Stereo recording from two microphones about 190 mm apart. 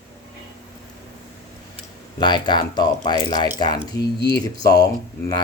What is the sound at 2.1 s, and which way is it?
Speech, 25° left (ahead or behind).